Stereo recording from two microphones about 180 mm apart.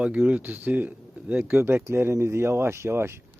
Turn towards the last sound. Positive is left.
turn(degrees=-15)  # may be behind; listen again after turning